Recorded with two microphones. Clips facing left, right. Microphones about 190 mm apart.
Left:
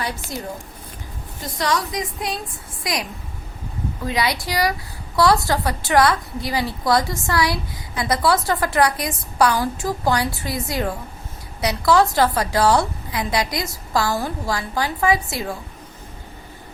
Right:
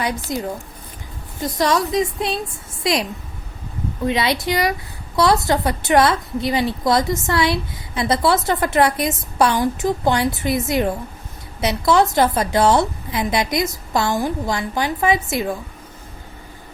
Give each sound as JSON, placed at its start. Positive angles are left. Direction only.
{"t": 0.0, "sound": "a woman's voice", "side_deg": -20}